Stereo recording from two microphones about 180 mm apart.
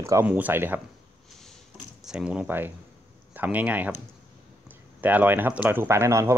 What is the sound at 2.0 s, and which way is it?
Speech, 5° right (ahead or behind).